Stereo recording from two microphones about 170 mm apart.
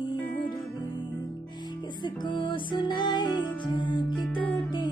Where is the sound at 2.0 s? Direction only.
30° left (ahead or behind).